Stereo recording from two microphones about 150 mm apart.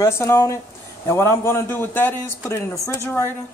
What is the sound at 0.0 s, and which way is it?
A woman's voice, 15° left (ahead or behind).